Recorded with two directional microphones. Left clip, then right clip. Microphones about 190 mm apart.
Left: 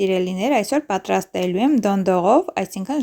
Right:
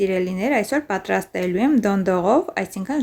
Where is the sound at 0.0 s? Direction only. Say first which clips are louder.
Left 1 dB; 35° left (ahead or behind).